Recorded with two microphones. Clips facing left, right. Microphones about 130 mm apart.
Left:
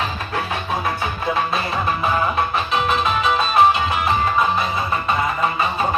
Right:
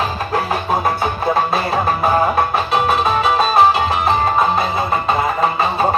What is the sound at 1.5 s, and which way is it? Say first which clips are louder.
Music: right 4 dB; 35° right (ahead or behind).